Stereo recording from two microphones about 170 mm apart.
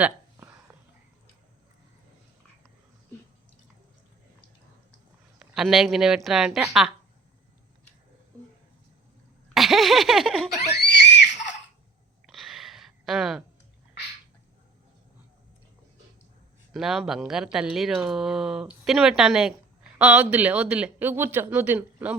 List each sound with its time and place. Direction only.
0.0 s a sound: 15° right (ahead or behind)
5.4 s speech: centre (ahead or behind)
9.6 s speech: centre (ahead or behind)
10.8 s screaming: 85° left
12.2 s a sound: centre (ahead or behind)
16.7 s speech: centre (ahead or behind)